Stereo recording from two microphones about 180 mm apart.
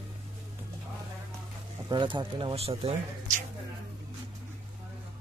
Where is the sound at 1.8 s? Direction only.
25° right (ahead or behind).